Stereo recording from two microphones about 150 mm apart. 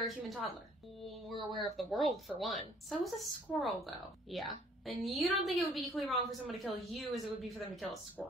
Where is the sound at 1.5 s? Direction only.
Centre (ahead or behind).